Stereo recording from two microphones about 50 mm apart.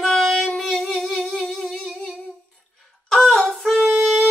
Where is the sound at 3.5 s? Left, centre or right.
Centre.